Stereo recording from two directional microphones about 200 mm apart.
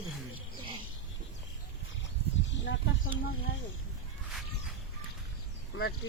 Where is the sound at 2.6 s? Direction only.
65° left (ahead or behind).